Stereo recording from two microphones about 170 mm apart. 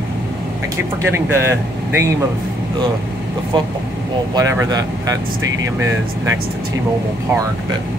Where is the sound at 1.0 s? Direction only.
15° right (ahead or behind).